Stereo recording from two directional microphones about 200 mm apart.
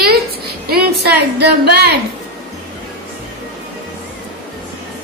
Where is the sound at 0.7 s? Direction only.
50° right (ahead or behind).